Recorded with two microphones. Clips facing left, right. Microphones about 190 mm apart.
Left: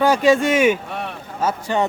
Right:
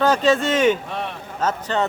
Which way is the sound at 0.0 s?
10° left (ahead or behind).